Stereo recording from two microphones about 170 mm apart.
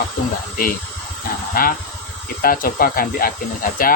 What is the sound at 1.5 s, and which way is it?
Speech, 55° left (ahead or behind).